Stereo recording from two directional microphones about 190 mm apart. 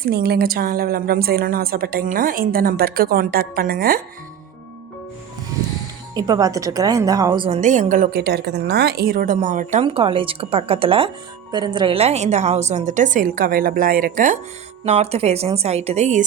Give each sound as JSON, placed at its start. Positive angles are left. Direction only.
{"t": 0.0, "sound": "a woman's voice", "side_deg": -55}
{"t": 6.1, "sound": "a woman's voice", "side_deg": -20}
{"t": 7.6, "sound": "a woman's voice", "side_deg": -40}
{"t": 9.8, "sound": "a woman's voice", "side_deg": -30}
{"t": 14.8, "sound": "a woman's voice", "side_deg": -35}